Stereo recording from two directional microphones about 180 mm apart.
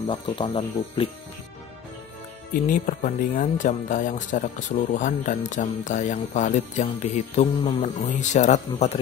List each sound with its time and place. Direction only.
0.0 s speech: 30° left (ahead or behind)
2.5 s speech: 50° left (ahead or behind)
5.5 s music: 45° left (ahead or behind)